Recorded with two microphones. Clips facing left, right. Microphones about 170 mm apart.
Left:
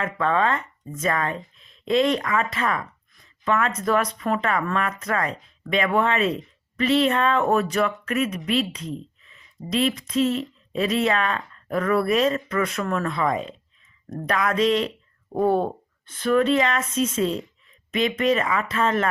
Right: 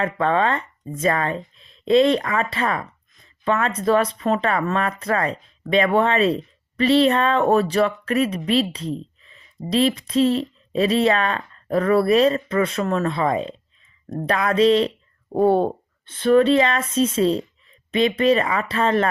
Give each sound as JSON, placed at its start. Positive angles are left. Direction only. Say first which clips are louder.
{"t": 0.0, "sound": "speech", "louder": "right 3 dB", "side_deg": -30}